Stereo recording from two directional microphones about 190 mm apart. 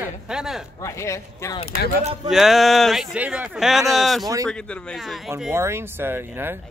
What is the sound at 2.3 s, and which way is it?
A man's voice, centre (ahead or behind).